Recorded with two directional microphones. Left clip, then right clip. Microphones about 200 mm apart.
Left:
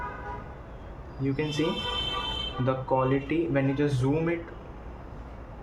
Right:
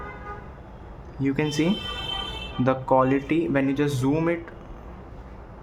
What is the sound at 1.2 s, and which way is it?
Speech, 45° right (ahead or behind).